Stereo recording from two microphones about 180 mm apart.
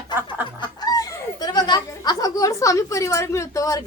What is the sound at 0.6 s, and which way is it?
A woman's voice, 20° left (ahead or behind).